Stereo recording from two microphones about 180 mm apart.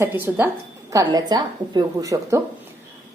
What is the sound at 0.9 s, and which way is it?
A woman's voice, 20° right (ahead or behind).